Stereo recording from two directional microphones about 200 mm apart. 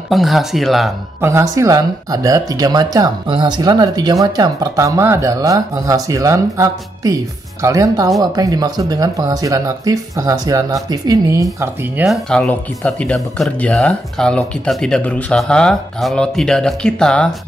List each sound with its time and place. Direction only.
0.1 s speech: centre (ahead or behind)
1.2 s speech: 15° right (ahead or behind)
12.3 s speech: 5° left (ahead or behind)